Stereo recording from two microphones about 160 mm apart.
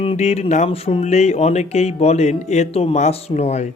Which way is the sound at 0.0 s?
40° left (ahead or behind).